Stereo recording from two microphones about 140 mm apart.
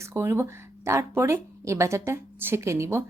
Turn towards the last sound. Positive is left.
turn(degrees=-20)  # may be behind; listen again after turning